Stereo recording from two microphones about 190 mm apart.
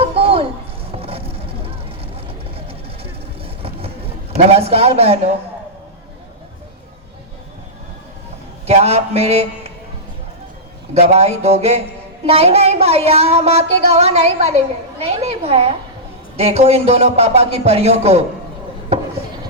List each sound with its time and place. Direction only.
0.0 s a sound: 30° right (ahead or behind)
2.2 s vehicle: 30° right (ahead or behind)
4.4 s a woman's voice: 30° right (ahead or behind)
8.6 s a man's voice: 30° right (ahead or behind)
10.9 s a woman's voice: 35° right (ahead or behind)